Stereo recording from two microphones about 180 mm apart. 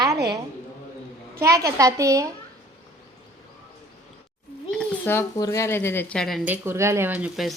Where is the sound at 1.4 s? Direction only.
15° right (ahead or behind).